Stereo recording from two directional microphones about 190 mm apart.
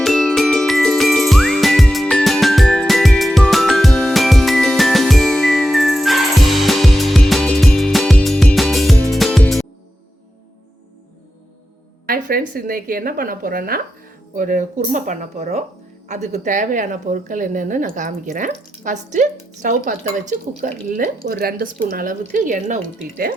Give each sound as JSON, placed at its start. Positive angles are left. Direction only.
{"t": 0.0, "sound": "music", "side_deg": 0}
{"t": 12.0, "sound": "a woman's voice", "side_deg": -50}